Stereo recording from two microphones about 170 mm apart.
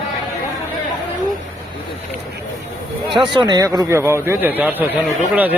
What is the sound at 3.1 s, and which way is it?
Speech, centre (ahead or behind).